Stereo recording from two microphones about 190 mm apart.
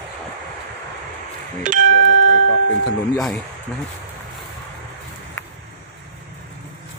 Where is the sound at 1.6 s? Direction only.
45° right (ahead or behind).